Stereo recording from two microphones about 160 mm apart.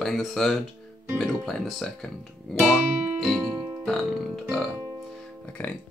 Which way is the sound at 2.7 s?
Centre (ahead or behind).